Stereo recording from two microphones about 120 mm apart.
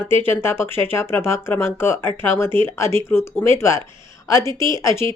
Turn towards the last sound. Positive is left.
turn(degrees=25)  # may be behind; listen again after turning